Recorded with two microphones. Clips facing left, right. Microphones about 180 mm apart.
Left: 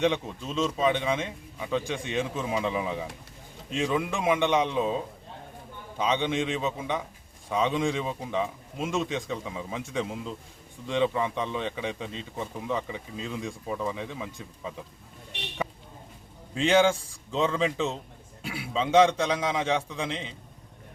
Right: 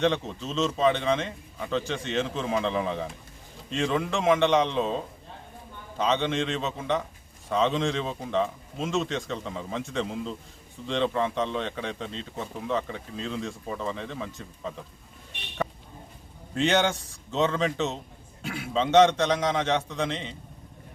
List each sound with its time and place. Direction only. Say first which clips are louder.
0.0 s speech: right 1 dB; 10° left (ahead or behind)
6.0 s speech: right 1 dB; 10° left (ahead or behind)
16.6 s a man's voice: left 2 dB; centre (ahead or behind)